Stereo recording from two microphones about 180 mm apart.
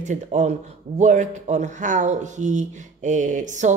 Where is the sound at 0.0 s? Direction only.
40° right (ahead or behind).